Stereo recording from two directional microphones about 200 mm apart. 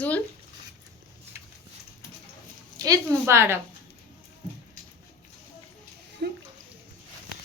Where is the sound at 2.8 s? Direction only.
15° right (ahead or behind).